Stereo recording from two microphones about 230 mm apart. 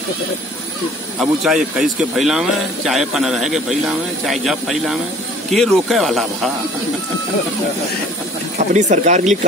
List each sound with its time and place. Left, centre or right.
1.2 s speech: centre
8.7 s speech: right